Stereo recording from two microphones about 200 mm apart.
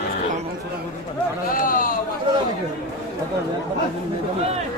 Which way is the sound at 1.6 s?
45° left (ahead or behind).